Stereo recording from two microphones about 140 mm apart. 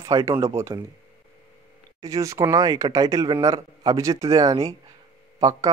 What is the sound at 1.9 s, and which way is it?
Speech, 25° right (ahead or behind).